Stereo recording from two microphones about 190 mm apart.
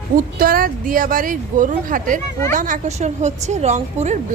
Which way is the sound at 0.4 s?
50° right (ahead or behind).